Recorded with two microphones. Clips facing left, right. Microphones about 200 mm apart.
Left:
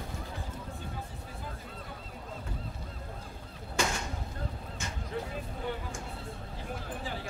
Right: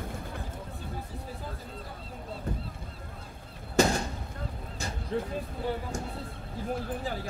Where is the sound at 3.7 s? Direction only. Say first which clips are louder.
Right 8 dB; 35° right (ahead or behind).